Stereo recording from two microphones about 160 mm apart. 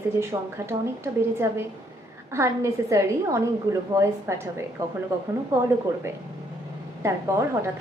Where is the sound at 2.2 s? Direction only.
15° right (ahead or behind).